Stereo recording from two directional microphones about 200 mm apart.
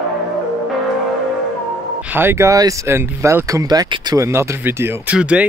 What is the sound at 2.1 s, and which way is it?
Speech, 10° right (ahead or behind).